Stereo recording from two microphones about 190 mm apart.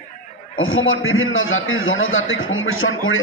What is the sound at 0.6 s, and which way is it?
A man's voice, 90° left.